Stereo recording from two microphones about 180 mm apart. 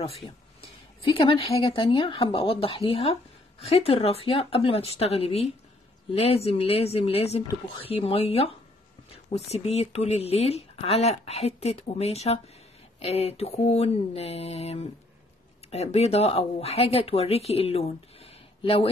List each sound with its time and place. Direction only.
0.0 s speech: 35° left (ahead or behind)